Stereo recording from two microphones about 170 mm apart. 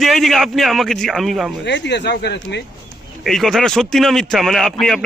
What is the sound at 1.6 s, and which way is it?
Speech, 90° left.